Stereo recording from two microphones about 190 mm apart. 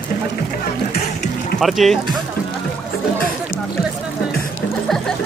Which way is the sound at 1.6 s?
Centre (ahead or behind).